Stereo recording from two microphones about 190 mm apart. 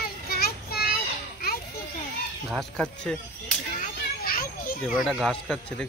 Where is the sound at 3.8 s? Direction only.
50° left (ahead or behind).